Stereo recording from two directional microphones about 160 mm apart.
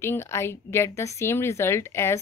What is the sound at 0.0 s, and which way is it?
A woman's voice, 15° left (ahead or behind).